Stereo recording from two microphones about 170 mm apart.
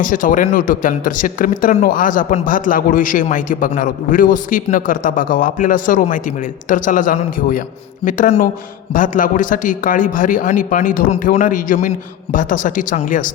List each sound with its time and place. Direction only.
0.0 s speech: 50° left (ahead or behind)